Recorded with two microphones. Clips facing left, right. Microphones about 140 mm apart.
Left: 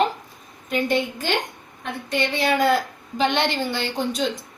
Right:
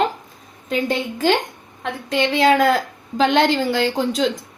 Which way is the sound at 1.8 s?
90° right.